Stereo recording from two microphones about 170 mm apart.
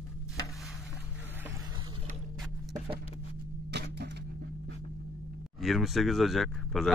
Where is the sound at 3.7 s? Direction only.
75° right (ahead or behind).